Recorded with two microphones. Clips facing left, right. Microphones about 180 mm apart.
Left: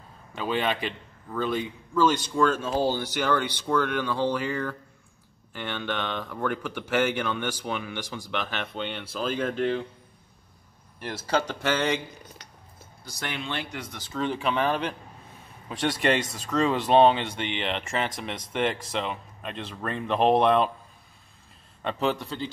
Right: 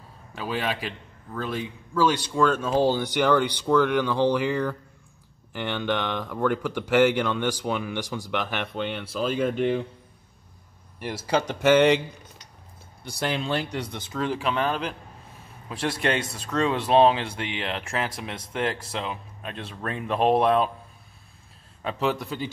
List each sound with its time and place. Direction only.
0.3 s a man's voice: 5° right (ahead or behind)
8.7 s speech: centre (ahead or behind)
11.0 s speech: 10° right (ahead or behind)
13.0 s speech: 35° right (ahead or behind)
14.1 s speech: centre (ahead or behind)
21.8 s speech: 5° right (ahead or behind)